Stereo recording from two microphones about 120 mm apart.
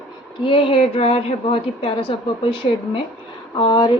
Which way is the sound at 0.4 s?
50° left (ahead or behind).